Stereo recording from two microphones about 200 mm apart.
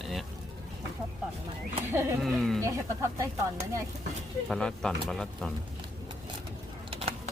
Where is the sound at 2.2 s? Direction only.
Centre (ahead or behind).